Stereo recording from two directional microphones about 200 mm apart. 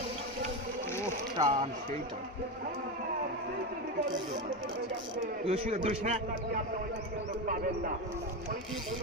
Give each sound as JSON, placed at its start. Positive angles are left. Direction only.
{"t": 1.4, "sound": "speech", "side_deg": -20}
{"t": 5.2, "sound": "a man's voice", "side_deg": -35}